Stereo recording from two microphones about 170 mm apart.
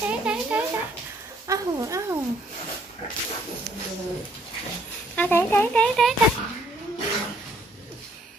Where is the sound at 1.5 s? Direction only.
20° right (ahead or behind).